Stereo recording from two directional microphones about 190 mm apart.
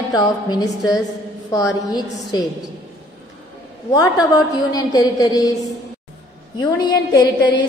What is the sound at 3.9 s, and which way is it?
A woman's voice, 20° left (ahead or behind).